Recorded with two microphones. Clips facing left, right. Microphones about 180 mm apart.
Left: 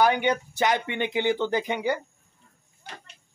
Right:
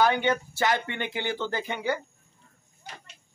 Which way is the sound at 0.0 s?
15° left (ahead or behind).